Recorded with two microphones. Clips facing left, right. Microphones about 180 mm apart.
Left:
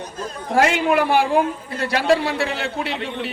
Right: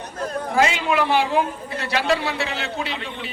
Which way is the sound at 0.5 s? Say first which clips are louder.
Left 4 dB; 60° left (ahead or behind).